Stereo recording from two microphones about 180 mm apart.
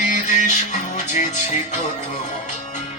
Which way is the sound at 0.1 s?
45° left (ahead or behind).